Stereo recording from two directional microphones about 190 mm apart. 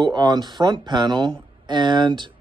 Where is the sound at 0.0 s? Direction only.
20° right (ahead or behind).